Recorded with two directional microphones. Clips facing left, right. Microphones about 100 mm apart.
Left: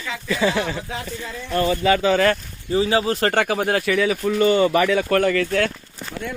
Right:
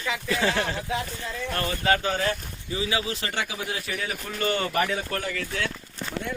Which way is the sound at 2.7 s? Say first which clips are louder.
Left 9 dB; 40° left (ahead or behind).